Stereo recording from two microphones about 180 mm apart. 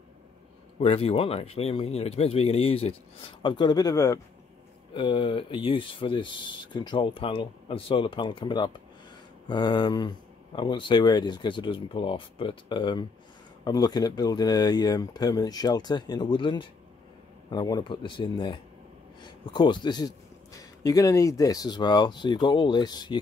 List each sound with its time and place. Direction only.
0.7 s speech: 35° left (ahead or behind)